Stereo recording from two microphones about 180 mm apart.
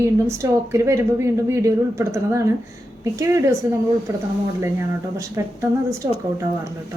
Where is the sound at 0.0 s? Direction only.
15° right (ahead or behind).